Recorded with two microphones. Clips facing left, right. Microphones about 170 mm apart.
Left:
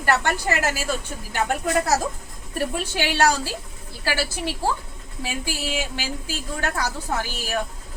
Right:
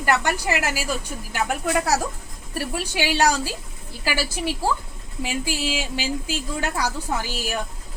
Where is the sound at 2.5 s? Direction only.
10° right (ahead or behind).